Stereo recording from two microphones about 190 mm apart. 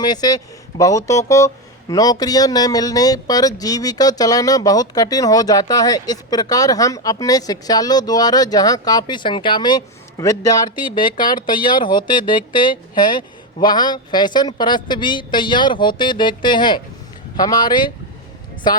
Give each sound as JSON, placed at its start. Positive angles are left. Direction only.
{"t": 0.0, "sound": "speech", "side_deg": 20}
{"t": 10.9, "sound": "speech", "side_deg": 45}
{"t": 11.8, "sound": "speech", "side_deg": 25}